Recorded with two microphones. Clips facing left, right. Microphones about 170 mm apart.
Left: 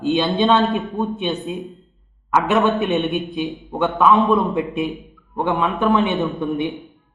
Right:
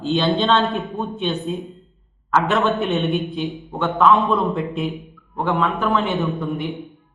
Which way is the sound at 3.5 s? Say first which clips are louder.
Left 2 dB; centre (ahead or behind).